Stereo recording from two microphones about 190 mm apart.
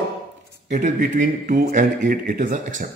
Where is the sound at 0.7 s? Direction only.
40° right (ahead or behind).